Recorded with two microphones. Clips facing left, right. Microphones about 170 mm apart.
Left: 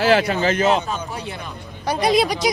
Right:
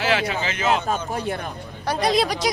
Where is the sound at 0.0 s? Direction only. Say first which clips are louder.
Left 6 dB; 40° left (ahead or behind).